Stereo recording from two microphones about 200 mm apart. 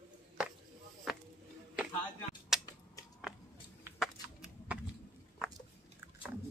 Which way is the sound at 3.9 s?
Centre (ahead or behind).